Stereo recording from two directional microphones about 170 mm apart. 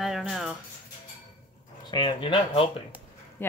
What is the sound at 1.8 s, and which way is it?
Speech, 25° left (ahead or behind).